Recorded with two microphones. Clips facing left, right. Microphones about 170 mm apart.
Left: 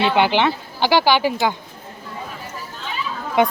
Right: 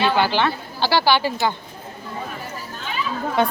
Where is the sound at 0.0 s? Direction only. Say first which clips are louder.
Left 2 dB; 20° left (ahead or behind).